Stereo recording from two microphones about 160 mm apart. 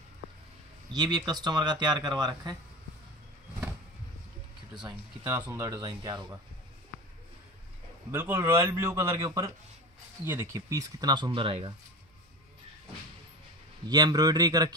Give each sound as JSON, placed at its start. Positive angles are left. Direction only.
{"t": 0.9, "sound": "speech", "side_deg": -25}
{"t": 4.8, "sound": "a man's voice", "side_deg": -15}
{"t": 8.1, "sound": "a man's voice", "side_deg": -15}
{"t": 13.8, "sound": "speech", "side_deg": -25}